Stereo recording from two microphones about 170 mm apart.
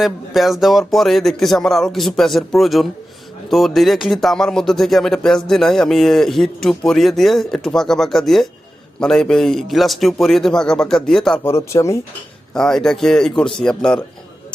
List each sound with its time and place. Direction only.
0.0 s speech: centre (ahead or behind)
11.4 s speech: 15° left (ahead or behind)
12.5 s speech: 5° left (ahead or behind)